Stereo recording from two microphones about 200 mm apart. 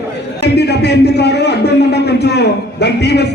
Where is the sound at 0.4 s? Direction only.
55° left (ahead or behind).